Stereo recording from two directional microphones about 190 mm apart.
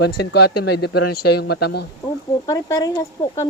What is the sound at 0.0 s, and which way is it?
Speech, 60° left (ahead or behind).